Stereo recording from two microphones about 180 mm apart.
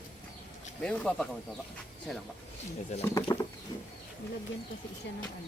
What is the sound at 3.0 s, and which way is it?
Speech, 15° left (ahead or behind).